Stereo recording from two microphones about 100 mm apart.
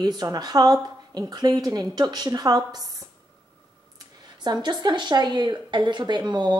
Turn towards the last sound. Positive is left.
turn(degrees=-50)  # may be behind; listen again after turning